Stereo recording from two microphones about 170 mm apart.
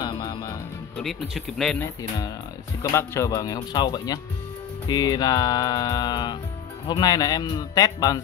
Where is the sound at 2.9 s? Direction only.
15° left (ahead or behind).